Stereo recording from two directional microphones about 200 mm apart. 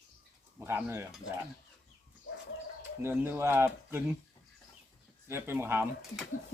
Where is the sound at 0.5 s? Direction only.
10° right (ahead or behind).